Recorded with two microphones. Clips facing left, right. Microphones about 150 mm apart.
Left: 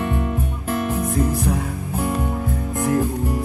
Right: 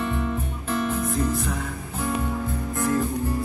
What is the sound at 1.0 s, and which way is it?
Music, 15° left (ahead or behind).